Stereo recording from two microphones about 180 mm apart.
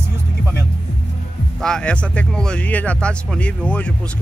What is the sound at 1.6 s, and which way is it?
Speech, 5° left (ahead or behind).